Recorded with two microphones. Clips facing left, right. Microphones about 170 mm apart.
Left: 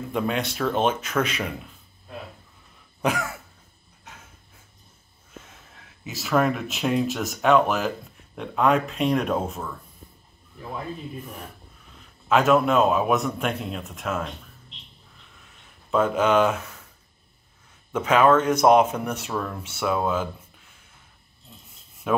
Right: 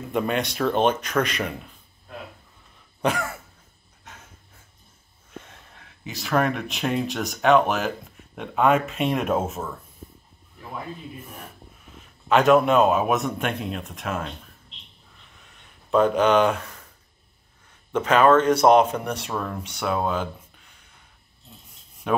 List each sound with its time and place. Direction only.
0.1 s speech: centre (ahead or behind)
3.0 s throat clearing: 10° left (ahead or behind)
6.0 s speech: 5° left (ahead or behind)
12.3 s speech: centre (ahead or behind)
15.9 s speech: 5° left (ahead or behind)
17.9 s speech: 10° left (ahead or behind)
22.0 s speech: 5° left (ahead or behind)